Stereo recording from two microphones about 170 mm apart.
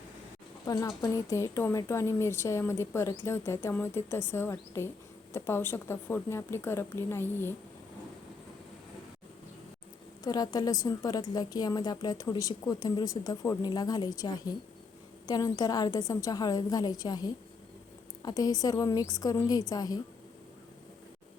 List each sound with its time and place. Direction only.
0.6 s speech: 20° left (ahead or behind)
10.2 s a woman's voice: 25° left (ahead or behind)